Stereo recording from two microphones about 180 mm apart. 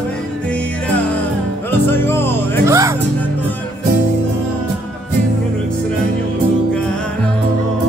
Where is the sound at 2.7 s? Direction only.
15° right (ahead or behind).